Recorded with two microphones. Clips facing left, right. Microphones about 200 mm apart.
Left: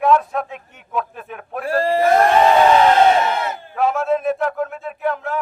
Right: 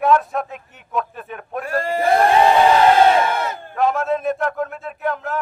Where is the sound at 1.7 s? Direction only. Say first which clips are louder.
Left 4 dB; 35° left (ahead or behind).